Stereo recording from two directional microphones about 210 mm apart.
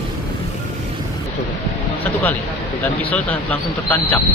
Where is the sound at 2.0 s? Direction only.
10° left (ahead or behind).